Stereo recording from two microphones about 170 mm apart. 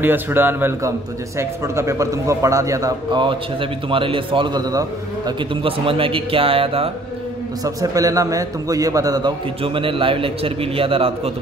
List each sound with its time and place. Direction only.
0.0 s a man's voice: 10° right (ahead or behind); by 6.9 s 35° right (ahead or behind)
7.6 s a man's voice: 20° right (ahead or behind)